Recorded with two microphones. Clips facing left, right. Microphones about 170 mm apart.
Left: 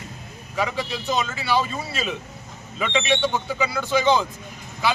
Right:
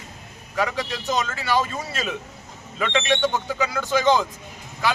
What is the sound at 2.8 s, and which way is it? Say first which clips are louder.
Speech: even; 10° left (ahead or behind).